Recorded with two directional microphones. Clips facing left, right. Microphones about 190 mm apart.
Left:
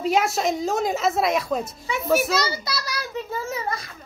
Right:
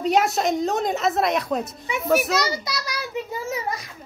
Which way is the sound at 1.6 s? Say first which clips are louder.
Even; 20° right (ahead or behind).